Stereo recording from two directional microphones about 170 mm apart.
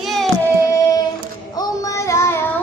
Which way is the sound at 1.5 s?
20° left (ahead or behind).